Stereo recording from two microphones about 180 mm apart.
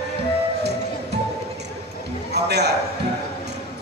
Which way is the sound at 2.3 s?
65° right (ahead or behind).